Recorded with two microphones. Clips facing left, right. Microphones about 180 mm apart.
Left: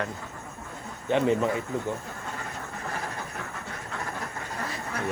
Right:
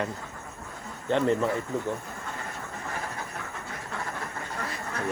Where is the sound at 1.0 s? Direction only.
15° left (ahead or behind).